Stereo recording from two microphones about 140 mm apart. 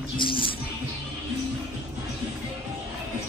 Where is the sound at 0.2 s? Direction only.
40° left (ahead or behind).